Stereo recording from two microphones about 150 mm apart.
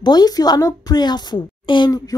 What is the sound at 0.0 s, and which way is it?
A woman's voice, 25° left (ahead or behind).